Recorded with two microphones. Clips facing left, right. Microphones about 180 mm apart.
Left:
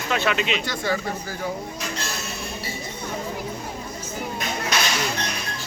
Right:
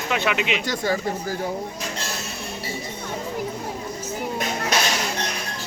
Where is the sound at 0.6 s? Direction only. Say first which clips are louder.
Right 2 dB; 40° right (ahead or behind).